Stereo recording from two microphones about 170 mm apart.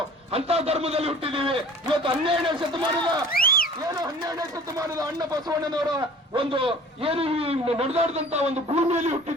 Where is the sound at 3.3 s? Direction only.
60° left (ahead or behind).